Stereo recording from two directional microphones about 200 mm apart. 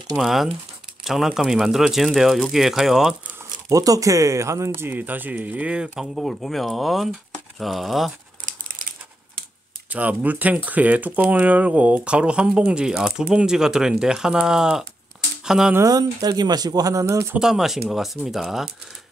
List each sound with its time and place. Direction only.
0.1 s speech: centre (ahead or behind)
3.6 s speech: 15° right (ahead or behind); by 8.1 s centre (ahead or behind)
9.8 s speech: 5° right (ahead or behind)
15.8 s speech: 20° right (ahead or behind)
17.4 s speech: centre (ahead or behind)